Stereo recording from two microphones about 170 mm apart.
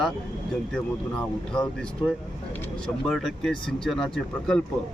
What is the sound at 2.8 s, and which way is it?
Speech, centre (ahead or behind).